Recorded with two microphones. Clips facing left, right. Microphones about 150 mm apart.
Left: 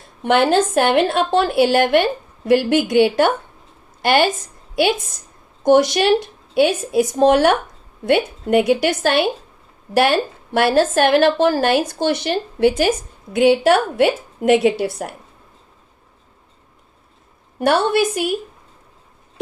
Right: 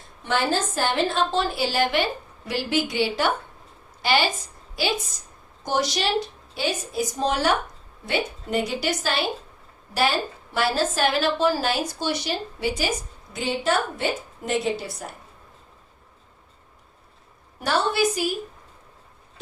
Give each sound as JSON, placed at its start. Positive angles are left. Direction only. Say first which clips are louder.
{"t": 0.2, "sound": "a woman's voice", "louder": "left 9 dB", "side_deg": 65}
{"t": 17.6, "sound": "a woman's voice", "louder": "left 6 dB", "side_deg": 60}